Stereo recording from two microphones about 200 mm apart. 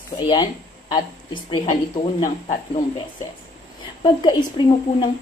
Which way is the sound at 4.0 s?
25° left (ahead or behind).